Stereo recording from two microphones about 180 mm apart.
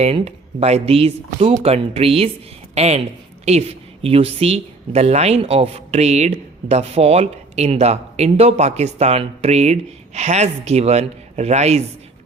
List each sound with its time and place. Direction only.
0.0 s speech: 35° right (ahead or behind)